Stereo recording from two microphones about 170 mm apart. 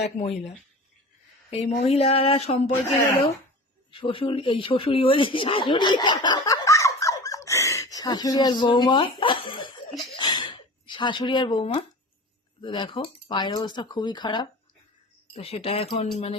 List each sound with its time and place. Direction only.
0.0 s speech: 40° left (ahead or behind)
3.9 s speech: 30° left (ahead or behind)
10.2 s a sound: 25° left (ahead or behind)
12.6 s speech: 30° left (ahead or behind)